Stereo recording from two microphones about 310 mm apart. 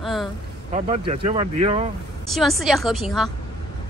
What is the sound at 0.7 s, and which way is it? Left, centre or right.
Speech, right.